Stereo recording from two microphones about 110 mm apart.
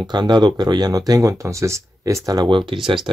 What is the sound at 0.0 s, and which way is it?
Speech, 40° right (ahead or behind).